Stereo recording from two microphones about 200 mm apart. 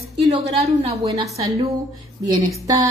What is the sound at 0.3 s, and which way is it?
A woman's voice, 30° right (ahead or behind).